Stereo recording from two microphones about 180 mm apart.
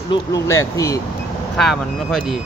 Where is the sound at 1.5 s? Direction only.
Centre (ahead or behind).